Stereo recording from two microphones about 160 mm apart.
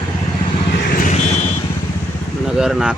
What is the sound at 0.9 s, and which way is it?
Vehicle, 60° left (ahead or behind).